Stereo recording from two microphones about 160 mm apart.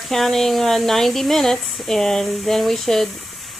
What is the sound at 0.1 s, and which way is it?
Speech, centre (ahead or behind).